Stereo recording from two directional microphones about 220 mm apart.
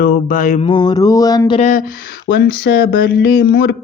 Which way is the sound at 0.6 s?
20° left (ahead or behind).